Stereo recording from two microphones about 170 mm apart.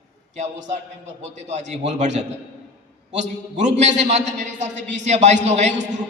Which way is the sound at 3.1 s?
45° right (ahead or behind).